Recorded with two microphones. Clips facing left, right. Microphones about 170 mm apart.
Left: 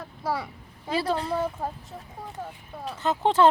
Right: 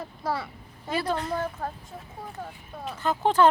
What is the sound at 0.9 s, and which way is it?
Speech, 30° left (ahead or behind).